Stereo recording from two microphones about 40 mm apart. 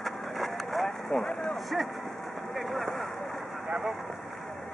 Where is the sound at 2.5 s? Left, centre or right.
Centre.